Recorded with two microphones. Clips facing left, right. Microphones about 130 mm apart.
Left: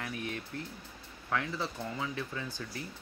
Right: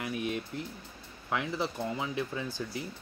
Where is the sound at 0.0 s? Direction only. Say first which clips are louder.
Right 5 dB; 15° right (ahead or behind).